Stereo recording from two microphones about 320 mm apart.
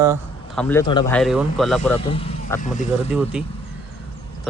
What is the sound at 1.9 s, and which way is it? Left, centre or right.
Speech, centre.